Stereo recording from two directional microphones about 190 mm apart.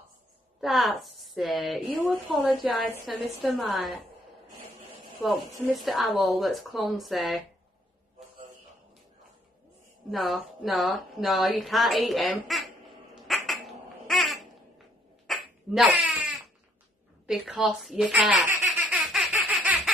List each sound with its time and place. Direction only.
0.6 s a woman's voice: centre (ahead or behind)
5.2 s a woman's voice: 15° left (ahead or behind)
5.7 s a woman's voice: centre (ahead or behind)
10.1 s a woman's voice: centre (ahead or behind)
13.3 s crow: centre (ahead or behind)
15.2 s a sound: centre (ahead or behind)
17.3 s a woman's voice: centre (ahead or behind)
18.8 s baby laughter: 5° right (ahead or behind)